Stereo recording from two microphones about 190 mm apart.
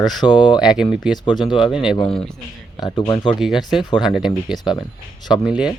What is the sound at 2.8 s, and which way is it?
Speech, 20° left (ahead or behind).